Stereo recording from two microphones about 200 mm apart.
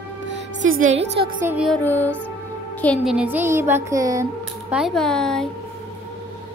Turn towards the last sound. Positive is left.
turn(degrees=5)  # may be behind; listen again after turning